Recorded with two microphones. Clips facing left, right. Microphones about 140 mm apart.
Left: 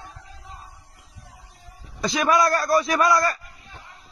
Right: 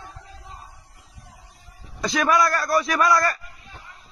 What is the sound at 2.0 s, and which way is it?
A man's voice, 20° left (ahead or behind).